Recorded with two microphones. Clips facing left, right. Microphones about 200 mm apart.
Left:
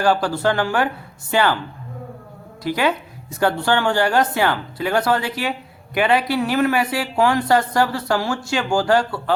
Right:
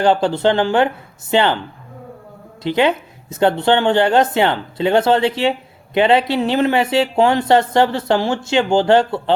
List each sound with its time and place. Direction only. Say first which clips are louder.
0.0 s speech: right 4 dB; 25° right (ahead or behind)
2.6 s speech: right 4 dB; 25° right (ahead or behind)